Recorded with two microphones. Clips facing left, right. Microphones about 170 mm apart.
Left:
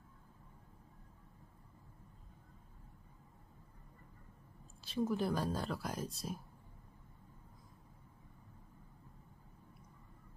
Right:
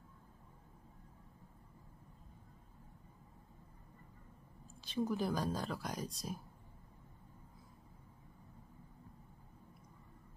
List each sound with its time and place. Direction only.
4.8 s speech: centre (ahead or behind)